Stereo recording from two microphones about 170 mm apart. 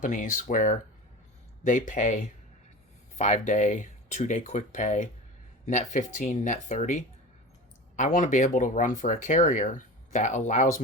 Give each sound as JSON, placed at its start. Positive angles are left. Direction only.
{"t": 0.0, "sound": "speech", "side_deg": 50}